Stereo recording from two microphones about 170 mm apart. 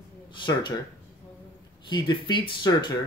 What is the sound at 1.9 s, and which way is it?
Speech, 25° left (ahead or behind).